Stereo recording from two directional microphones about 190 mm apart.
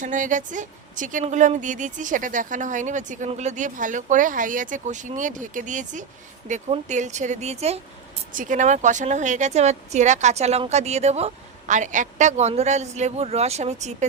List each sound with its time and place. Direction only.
0.0 s a woman's voice: 40° right (ahead or behind)